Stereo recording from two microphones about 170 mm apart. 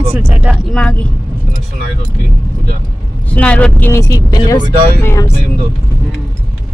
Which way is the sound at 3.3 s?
10° left (ahead or behind).